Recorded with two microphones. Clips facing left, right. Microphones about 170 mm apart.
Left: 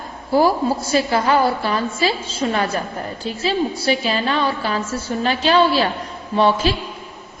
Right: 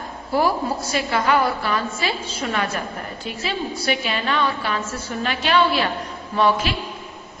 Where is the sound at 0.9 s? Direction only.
30° left (ahead or behind).